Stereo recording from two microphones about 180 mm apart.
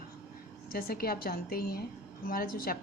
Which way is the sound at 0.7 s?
55° left (ahead or behind).